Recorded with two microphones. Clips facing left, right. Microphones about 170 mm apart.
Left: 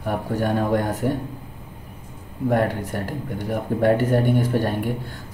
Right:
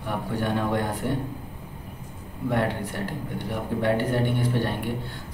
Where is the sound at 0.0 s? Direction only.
45° left (ahead or behind).